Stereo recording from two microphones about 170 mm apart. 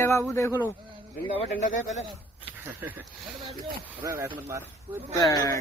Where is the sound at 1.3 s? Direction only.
40° left (ahead or behind).